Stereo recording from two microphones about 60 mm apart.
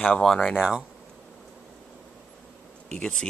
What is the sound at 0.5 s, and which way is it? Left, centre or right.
Speech, centre.